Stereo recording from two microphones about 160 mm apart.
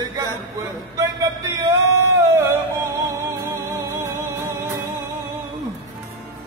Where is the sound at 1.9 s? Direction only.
15° right (ahead or behind).